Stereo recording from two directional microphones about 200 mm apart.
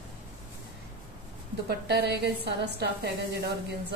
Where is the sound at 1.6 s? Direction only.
55° right (ahead or behind).